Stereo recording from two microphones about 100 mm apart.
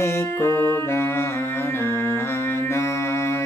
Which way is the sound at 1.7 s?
25° left (ahead or behind).